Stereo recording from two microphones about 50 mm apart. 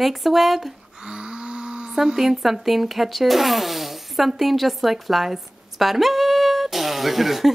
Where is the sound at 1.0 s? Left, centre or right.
Centre.